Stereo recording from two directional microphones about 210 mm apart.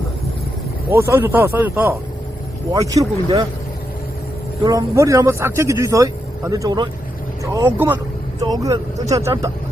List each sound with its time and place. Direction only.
0.9 s a man's voice: 10° right (ahead or behind)
4.6 s a man's voice: 15° right (ahead or behind)